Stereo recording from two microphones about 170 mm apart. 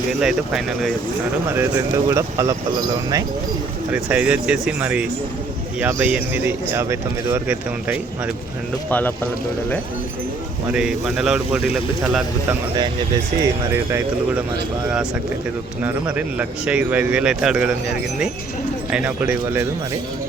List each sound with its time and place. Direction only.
0.2 s speech: centre (ahead or behind)
1.5 s speech: 15° right (ahead or behind)
3.9 s speech: 10° right (ahead or behind)
8.9 s speech: 10° left (ahead or behind)
10.7 s speech: 5° right (ahead or behind)
15.8 s speech: 10° right (ahead or behind)
18.9 s speech: 5° right (ahead or behind)